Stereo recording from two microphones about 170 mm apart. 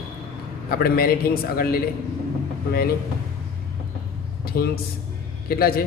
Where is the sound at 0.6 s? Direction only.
60° left (ahead or behind).